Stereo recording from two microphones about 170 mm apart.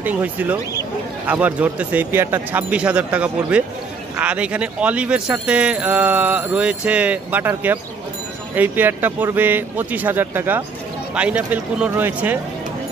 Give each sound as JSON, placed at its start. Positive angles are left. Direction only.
{"t": 0.0, "sound": "speech", "side_deg": -10}